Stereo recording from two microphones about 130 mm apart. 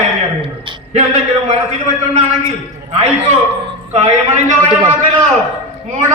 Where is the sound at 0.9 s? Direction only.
55° right (ahead or behind).